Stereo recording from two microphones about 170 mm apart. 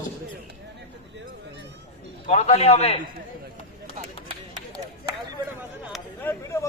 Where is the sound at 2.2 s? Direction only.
40° left (ahead or behind).